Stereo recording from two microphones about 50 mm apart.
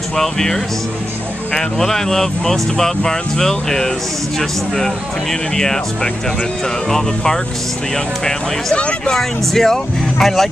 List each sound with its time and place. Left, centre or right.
0.1 s speech: centre
8.7 s speech: left
9.1 s speech: centre